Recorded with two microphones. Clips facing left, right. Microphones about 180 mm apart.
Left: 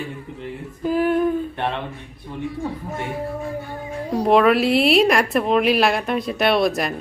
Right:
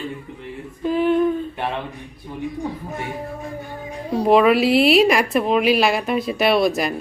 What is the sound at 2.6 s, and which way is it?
Speech, 15° right (ahead or behind).